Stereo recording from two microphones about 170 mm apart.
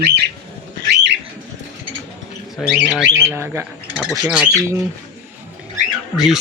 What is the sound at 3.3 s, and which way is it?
Speech, 15° right (ahead or behind).